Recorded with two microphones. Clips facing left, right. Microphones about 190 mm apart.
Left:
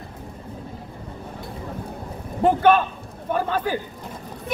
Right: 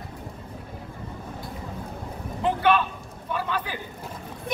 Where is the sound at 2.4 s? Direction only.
45° left (ahead or behind).